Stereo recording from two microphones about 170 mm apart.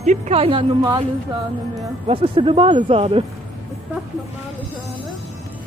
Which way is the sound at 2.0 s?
35° right (ahead or behind).